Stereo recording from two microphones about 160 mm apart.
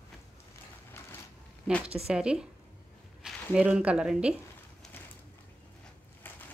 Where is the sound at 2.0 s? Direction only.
5° right (ahead or behind).